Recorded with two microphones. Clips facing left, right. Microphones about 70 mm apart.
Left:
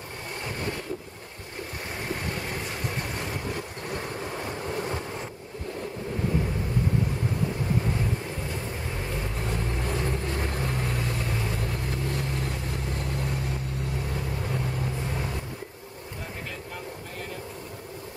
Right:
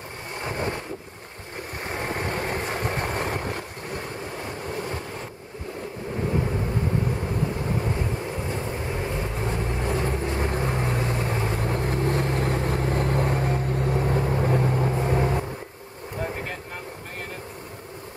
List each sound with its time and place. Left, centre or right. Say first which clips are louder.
0.4 s vehicle: right 6 dB; right
2.0 s vehicle: right 5 dB; right
9.4 s vehicle: right 3 dB; right